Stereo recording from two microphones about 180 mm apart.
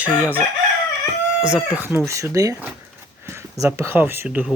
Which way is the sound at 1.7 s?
10° right (ahead or behind).